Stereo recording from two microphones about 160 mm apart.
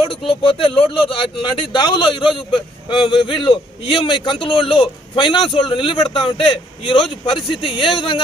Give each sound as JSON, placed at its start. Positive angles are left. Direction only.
{"t": 0.0, "sound": "a man's voice", "side_deg": 35}